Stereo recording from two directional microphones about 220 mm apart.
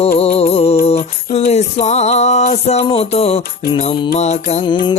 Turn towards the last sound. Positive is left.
turn(degrees=20)  # may be behind; listen again after turning